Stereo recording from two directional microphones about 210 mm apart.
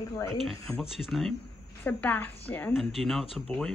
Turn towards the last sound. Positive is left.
turn(degrees=5)  # may be behind; listen again after turning